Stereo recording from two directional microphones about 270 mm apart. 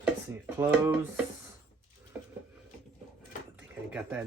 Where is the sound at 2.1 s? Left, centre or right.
Centre.